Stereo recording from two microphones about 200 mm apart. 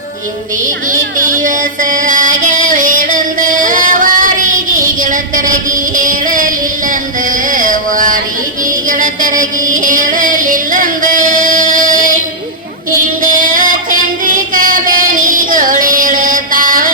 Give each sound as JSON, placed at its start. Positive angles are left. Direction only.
{"t": 0.9, "sound": "music", "side_deg": -40}
{"t": 13.2, "sound": "music", "side_deg": -40}